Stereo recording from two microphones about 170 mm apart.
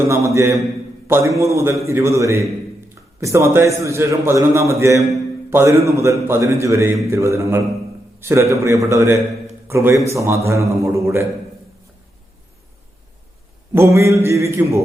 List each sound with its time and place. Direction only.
0.1 s a man's voice: 15° right (ahead or behind)
13.7 s a man's voice: 15° right (ahead or behind)